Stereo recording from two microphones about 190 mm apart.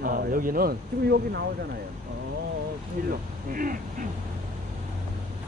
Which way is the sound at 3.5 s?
45° right (ahead or behind).